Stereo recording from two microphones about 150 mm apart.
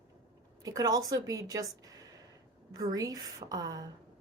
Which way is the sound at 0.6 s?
25° right (ahead or behind).